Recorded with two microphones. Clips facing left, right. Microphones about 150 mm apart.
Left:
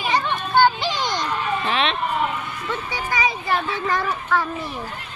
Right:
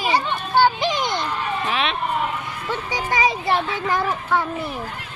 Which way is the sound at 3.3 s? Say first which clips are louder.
Right 2 dB; 35° right (ahead or behind).